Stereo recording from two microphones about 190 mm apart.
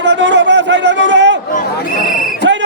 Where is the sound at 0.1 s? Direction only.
70° right (ahead or behind).